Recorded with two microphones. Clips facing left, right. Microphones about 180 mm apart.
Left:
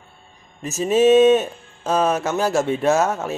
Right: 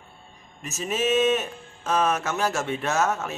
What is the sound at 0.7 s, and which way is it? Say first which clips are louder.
Speech: left 10 dB; 30° left (ahead or behind).